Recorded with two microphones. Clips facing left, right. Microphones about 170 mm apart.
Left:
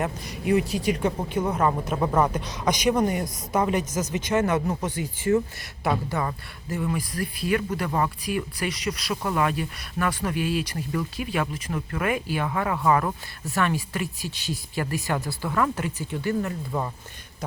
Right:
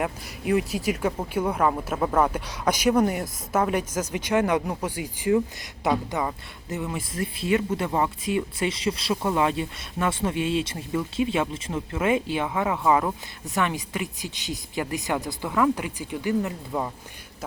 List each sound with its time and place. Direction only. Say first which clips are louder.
0.0 s speech: left 1 dB; centre (ahead or behind)